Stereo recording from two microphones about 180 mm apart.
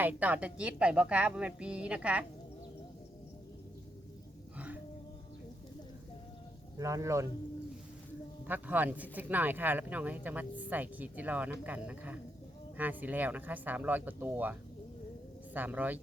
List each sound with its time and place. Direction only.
0.0 s speech: 10° right (ahead or behind)
4.5 s music: 10° right (ahead or behind)
6.7 s speech: 20° right (ahead or behind)
8.4 s speech: 10° right (ahead or behind)
15.5 s speech: 10° right (ahead or behind)